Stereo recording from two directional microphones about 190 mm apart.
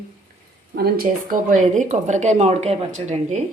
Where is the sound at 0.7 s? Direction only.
50° right (ahead or behind).